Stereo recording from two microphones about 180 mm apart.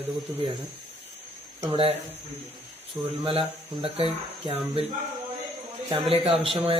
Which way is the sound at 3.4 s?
30° right (ahead or behind).